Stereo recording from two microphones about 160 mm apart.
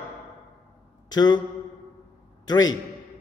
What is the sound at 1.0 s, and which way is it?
Speech, 25° left (ahead or behind).